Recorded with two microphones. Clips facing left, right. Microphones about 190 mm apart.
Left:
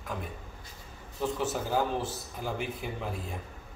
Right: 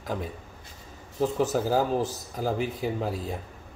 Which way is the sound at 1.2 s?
40° right (ahead or behind).